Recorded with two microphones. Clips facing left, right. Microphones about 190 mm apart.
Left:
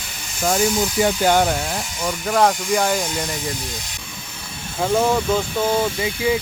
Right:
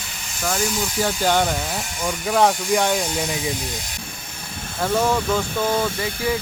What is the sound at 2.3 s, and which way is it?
Speech, centre (ahead or behind).